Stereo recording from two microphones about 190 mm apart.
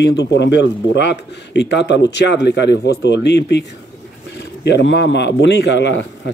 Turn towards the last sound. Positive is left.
turn(degrees=70)  # may be behind; listen again after turning